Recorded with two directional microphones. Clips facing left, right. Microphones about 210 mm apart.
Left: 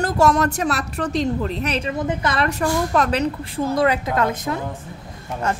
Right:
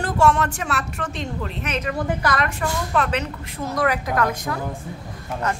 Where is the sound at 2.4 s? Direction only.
40° left (ahead or behind).